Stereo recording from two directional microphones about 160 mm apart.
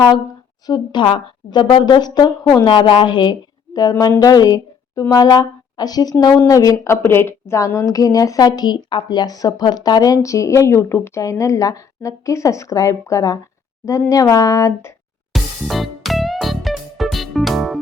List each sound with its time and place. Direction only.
0.7 s a woman's voice: 30° left (ahead or behind)
15.3 s music: centre (ahead or behind)